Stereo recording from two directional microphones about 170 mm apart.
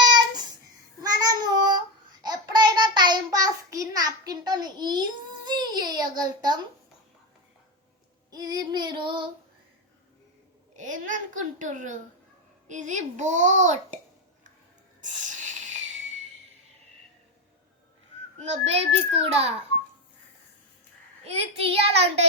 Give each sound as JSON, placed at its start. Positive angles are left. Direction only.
{"t": 1.0, "sound": "child singing", "side_deg": -20}
{"t": 8.3, "sound": "female singing", "side_deg": -25}
{"t": 10.8, "sound": "a sound", "side_deg": -50}
{"t": 12.6, "sound": "a child's voice", "side_deg": -45}
{"t": 15.0, "sound": "a sound", "side_deg": -45}
{"t": 18.3, "sound": "a child's voice", "side_deg": -40}
{"t": 21.2, "sound": "a child's voice", "side_deg": -35}